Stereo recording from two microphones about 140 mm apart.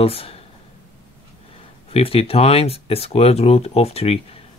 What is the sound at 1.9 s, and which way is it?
Speech, 45° left (ahead or behind).